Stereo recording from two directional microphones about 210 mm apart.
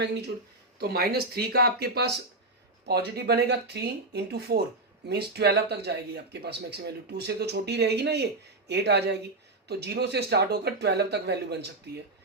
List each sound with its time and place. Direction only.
0.8 s speech: 45° right (ahead or behind)